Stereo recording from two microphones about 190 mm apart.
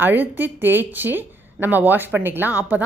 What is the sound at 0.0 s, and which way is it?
A woman's voice, 10° right (ahead or behind).